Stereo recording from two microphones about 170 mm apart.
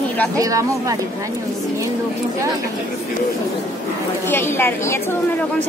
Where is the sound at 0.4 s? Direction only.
20° right (ahead or behind).